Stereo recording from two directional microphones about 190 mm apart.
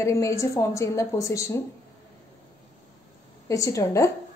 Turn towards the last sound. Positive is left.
turn(degrees=15)  # may be behind; listen again after turning